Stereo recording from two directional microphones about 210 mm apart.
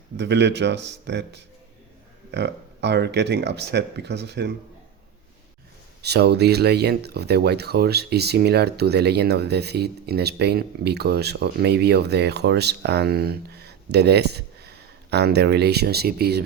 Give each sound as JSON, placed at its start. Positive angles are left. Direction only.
{"t": 0.2, "sound": "speech", "side_deg": -55}
{"t": 6.0, "sound": "speech", "side_deg": -50}